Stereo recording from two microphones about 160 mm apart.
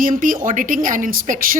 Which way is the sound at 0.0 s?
60° right (ahead or behind).